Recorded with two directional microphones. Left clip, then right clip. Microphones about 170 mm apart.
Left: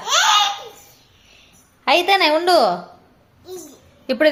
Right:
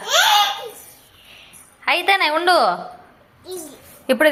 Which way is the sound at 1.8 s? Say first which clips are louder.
Left 2 dB; 10° left (ahead or behind).